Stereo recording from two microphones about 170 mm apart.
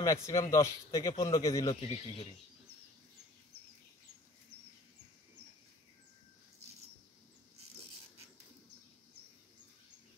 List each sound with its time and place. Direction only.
0.0 s a man's voice: 20° left (ahead or behind)
1.7 s speech: 35° left (ahead or behind)